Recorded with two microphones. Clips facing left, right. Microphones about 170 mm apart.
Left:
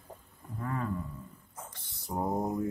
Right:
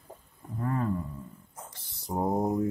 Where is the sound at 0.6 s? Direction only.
35° right (ahead or behind).